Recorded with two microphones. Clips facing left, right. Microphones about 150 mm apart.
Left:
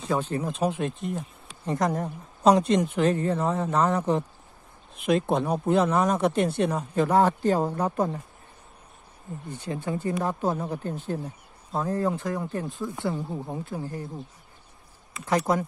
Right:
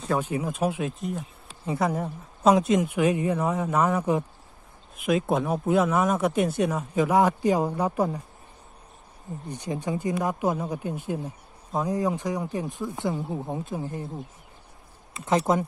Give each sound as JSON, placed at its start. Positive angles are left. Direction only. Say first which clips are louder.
{"t": 0.2, "sound": "speech", "louder": "even", "side_deg": -10}
{"t": 5.3, "sound": "speech", "louder": "even", "side_deg": 0}
{"t": 9.5, "sound": "speech", "louder": "right 1 dB", "side_deg": -15}
{"t": 15.1, "sound": "speech", "louder": "right 1 dB", "side_deg": -20}